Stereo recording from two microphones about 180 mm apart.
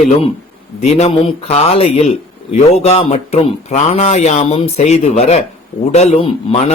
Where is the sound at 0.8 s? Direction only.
35° left (ahead or behind).